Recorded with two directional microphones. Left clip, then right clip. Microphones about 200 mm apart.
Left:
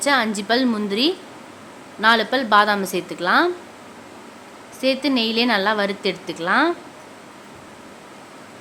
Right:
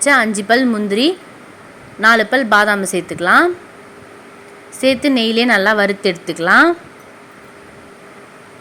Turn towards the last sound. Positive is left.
turn(degrees=-25)  # may be behind; listen again after turning